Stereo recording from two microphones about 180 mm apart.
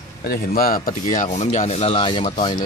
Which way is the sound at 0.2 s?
55° left (ahead or behind).